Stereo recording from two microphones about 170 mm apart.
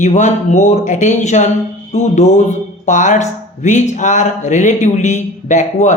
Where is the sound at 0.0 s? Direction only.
45° left (ahead or behind).